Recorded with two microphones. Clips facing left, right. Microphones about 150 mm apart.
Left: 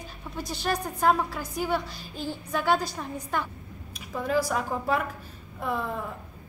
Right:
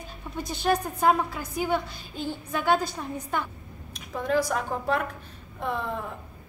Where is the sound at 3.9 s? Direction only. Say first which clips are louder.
Right 1 dB; 5° left (ahead or behind).